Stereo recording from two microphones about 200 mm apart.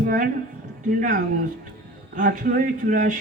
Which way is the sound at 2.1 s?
40° right (ahead or behind).